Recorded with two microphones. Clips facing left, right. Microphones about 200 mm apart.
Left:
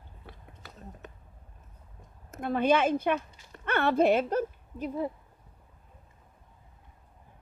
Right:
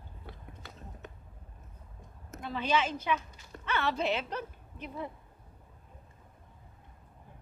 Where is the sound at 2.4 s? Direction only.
55° left (ahead or behind); by 5.1 s 40° left (ahead or behind).